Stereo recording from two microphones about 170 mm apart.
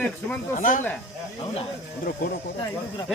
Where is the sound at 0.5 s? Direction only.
50° left (ahead or behind).